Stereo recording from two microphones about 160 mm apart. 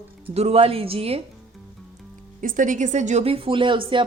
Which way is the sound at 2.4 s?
55° right (ahead or behind).